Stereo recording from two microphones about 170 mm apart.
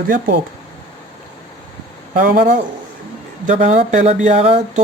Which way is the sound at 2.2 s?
50° right (ahead or behind).